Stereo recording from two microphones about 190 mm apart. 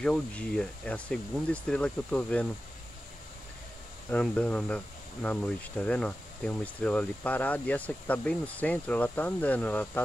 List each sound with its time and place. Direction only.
0.0 s speech: 5° left (ahead or behind)
4.1 s speech: 5° left (ahead or behind)